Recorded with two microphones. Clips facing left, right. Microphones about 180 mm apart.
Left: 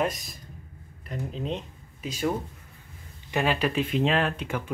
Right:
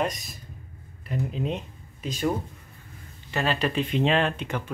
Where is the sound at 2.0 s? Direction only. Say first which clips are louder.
Right 1 dB; 10° left (ahead or behind).